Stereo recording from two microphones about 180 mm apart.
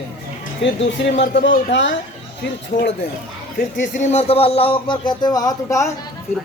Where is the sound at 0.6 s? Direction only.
80° left.